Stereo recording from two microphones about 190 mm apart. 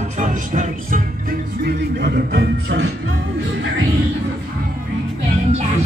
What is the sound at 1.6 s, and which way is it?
Music, 60° right (ahead or behind).